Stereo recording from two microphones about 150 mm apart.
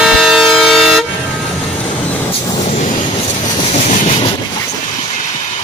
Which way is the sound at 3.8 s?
50° left (ahead or behind).